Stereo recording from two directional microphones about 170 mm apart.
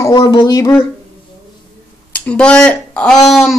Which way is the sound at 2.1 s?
10° left (ahead or behind).